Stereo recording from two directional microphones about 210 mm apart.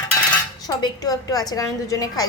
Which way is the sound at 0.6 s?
15° left (ahead or behind).